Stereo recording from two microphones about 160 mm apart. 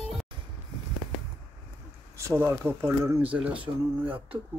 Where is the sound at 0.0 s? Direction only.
Centre (ahead or behind).